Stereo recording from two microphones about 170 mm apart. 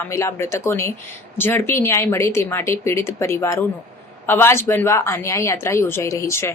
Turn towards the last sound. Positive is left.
turn(degrees=15)  # may be behind; listen again after turning